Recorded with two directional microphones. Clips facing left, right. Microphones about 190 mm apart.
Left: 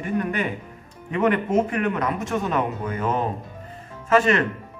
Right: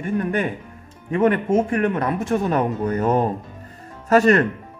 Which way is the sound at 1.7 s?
40° right (ahead or behind).